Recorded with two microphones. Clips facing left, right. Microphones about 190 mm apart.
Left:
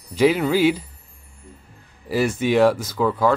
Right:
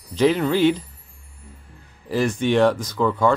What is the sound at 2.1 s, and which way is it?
Speech, 10° left (ahead or behind).